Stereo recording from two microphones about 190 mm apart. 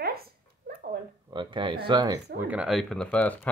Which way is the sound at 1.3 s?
25° right (ahead or behind).